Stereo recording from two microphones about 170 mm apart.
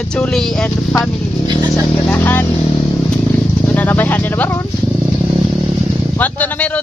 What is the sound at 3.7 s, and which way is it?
Speech, 10° left (ahead or behind).